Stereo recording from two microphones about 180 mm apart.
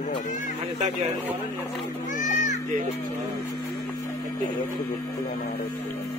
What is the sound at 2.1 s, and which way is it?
Speech, 45° left (ahead or behind).